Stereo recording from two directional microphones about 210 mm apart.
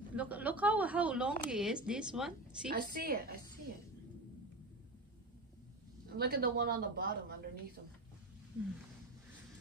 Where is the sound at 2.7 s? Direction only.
45° right (ahead or behind).